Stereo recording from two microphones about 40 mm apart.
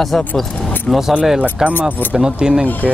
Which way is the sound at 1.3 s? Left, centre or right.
Right.